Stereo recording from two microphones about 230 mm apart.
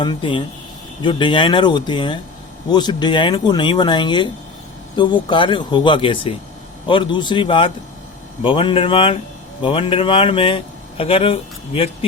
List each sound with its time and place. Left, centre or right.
0.0 s speech: left